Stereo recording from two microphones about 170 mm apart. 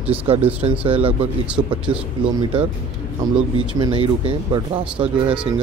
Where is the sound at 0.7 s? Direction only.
35° right (ahead or behind).